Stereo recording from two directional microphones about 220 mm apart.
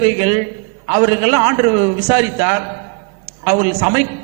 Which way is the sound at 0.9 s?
20° right (ahead or behind).